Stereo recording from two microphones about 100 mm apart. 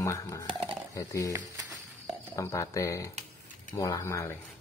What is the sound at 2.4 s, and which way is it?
Speech, 35° left (ahead or behind).